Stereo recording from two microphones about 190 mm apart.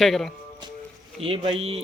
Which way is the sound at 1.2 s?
30° right (ahead or behind).